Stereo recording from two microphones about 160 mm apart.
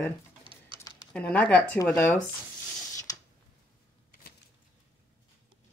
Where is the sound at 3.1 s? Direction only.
20° left (ahead or behind).